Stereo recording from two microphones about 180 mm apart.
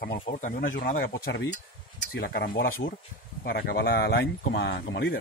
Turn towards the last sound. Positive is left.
turn(degrees=65)  # may be behind; listen again after turning